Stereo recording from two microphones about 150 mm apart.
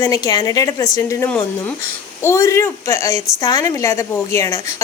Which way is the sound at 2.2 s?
20° left (ahead or behind).